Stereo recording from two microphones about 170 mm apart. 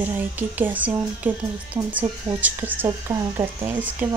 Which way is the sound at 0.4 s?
10° right (ahead or behind).